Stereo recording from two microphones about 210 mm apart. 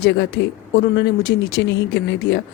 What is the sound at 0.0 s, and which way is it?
Speech, 55° left (ahead or behind).